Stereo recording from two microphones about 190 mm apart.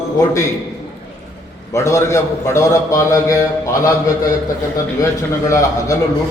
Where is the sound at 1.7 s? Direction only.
15° left (ahead or behind).